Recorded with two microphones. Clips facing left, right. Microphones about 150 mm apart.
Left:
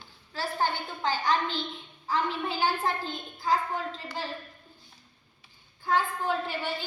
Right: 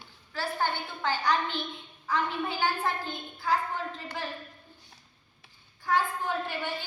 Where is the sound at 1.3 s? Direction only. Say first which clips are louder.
Even; 15° right (ahead or behind).